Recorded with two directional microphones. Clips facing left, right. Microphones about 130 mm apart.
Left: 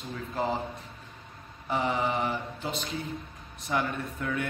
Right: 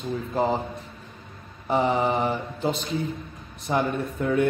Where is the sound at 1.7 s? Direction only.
30° right (ahead or behind).